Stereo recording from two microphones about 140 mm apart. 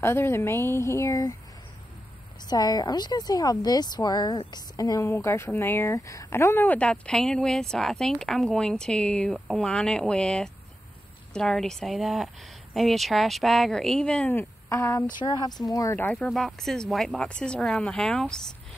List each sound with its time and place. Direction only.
0.0 s speech: 15° left (ahead or behind)
2.4 s a woman's voice: 30° left (ahead or behind); by 14.4 s 10° left (ahead or behind)
14.7 s a woman's voice: 20° left (ahead or behind)
15.1 s a woman's voice: 30° left (ahead or behind)
16.0 s speech: 10° left (ahead or behind)
16.3 s speech: centre (ahead or behind)